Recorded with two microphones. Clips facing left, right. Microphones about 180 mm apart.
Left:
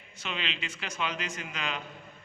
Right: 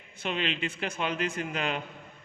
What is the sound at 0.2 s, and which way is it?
A man's voice, 50° right (ahead or behind).